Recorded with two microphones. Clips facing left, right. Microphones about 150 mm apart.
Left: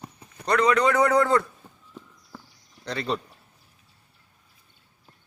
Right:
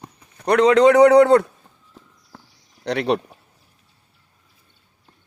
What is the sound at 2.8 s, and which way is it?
Speech, 75° right (ahead or behind).